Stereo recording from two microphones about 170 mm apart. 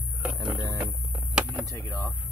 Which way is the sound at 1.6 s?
15° left (ahead or behind).